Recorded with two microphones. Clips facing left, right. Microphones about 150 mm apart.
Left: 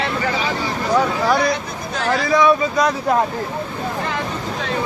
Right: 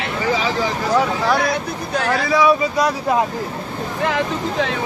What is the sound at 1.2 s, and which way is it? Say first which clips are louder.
Speech: left 1 dB; centre (ahead or behind).